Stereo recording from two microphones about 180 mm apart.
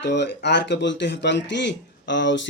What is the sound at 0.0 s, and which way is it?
Speech, 70° left (ahead or behind).